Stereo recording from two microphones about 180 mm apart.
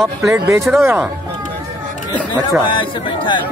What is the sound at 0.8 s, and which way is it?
Speech, 10° right (ahead or behind).